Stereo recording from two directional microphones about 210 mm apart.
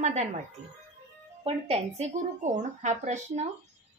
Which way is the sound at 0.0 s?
35° right (ahead or behind).